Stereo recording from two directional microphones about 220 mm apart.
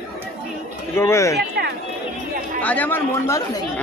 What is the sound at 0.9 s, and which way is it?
Speech, 15° left (ahead or behind).